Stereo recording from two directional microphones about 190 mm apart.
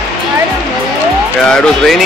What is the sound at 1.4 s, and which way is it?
Speech, 5° left (ahead or behind).